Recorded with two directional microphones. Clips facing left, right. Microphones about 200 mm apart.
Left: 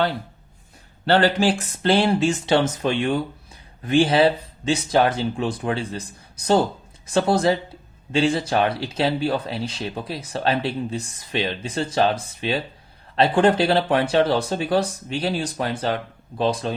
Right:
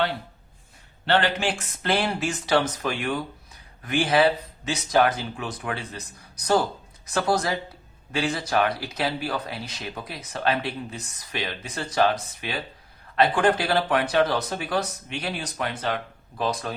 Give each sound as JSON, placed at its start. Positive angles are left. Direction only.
{"t": 1.0, "sound": "speech", "side_deg": 40}